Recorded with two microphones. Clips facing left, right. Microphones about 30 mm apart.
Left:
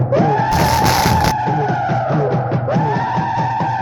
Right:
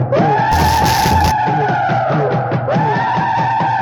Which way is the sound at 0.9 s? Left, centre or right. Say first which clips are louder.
Right 2 dB; centre.